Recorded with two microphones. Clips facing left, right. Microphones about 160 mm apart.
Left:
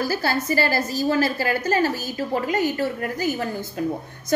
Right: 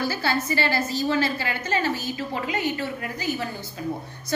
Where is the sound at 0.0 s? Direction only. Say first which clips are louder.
Left 2 dB; 45° left (ahead or behind).